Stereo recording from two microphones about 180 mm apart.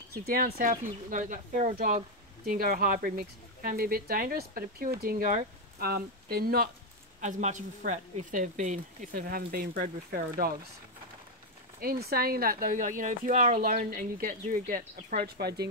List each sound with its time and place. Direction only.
0.1 s speech: 55° right (ahead or behind)
7.2 s speech: 40° right (ahead or behind)
11.8 s speech: 55° right (ahead or behind)